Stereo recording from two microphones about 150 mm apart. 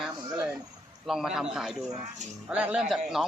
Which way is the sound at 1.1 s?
5° right (ahead or behind).